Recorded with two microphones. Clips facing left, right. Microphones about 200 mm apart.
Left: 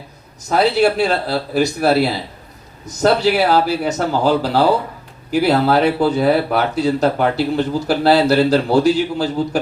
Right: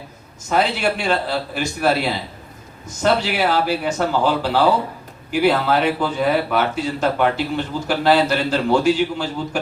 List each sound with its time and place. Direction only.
0.4 s speech: 40° left (ahead or behind)